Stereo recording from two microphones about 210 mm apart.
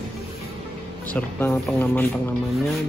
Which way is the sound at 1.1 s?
10° left (ahead or behind).